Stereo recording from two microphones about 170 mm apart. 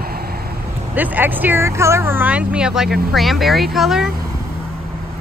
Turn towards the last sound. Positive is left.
turn(degrees=0)  # may be behind; listen again after turning